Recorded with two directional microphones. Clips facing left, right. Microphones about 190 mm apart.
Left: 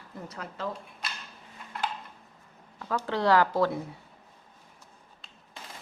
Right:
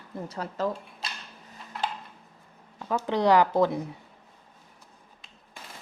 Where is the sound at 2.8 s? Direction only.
20° right (ahead or behind).